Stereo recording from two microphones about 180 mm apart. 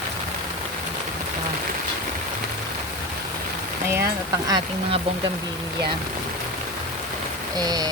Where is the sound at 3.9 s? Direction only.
20° right (ahead or behind).